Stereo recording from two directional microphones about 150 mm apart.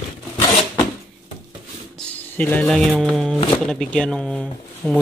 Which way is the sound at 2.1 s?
10° left (ahead or behind).